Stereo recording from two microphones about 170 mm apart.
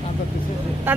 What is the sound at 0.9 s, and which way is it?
Speech, 10° right (ahead or behind).